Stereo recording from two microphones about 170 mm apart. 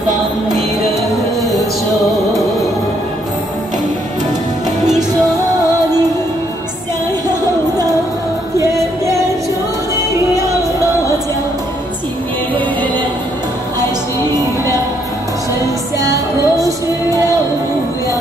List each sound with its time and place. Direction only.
7.2 s music: 20° right (ahead or behind)
16.0 s music: 20° right (ahead or behind)